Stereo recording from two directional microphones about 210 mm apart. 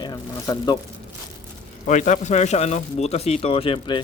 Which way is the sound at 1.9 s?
35° left (ahead or behind).